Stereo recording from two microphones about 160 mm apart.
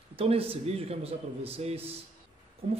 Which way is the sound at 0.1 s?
35° right (ahead or behind).